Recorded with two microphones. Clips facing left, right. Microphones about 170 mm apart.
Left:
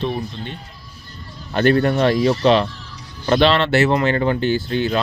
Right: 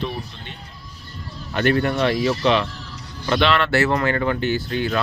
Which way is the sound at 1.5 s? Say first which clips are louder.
Left 4 dB; 35° left (ahead or behind).